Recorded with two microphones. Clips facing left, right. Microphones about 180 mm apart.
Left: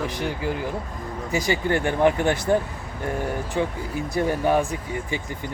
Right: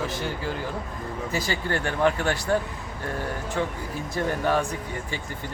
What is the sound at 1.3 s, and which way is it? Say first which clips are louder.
Speech: left 6 dB; 15° left (ahead or behind).